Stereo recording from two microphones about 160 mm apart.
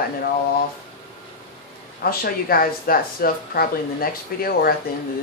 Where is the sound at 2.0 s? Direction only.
70° left (ahead or behind).